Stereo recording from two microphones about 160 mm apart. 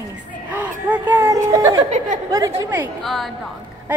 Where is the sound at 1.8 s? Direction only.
50° right (ahead or behind).